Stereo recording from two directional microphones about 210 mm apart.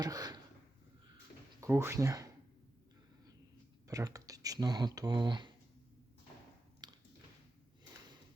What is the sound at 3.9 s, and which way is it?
Speech, 15° right (ahead or behind).